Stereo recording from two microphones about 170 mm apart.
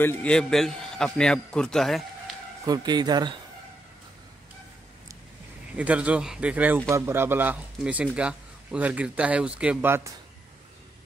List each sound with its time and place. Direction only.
0.0 s a man's voice: 10° left (ahead or behind)
2.6 s speech: 25° right (ahead or behind)
5.8 s speech: 10° right (ahead or behind)